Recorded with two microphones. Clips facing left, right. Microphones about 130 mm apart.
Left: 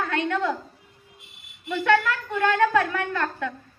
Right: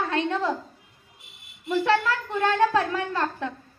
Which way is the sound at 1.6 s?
30° right (ahead or behind).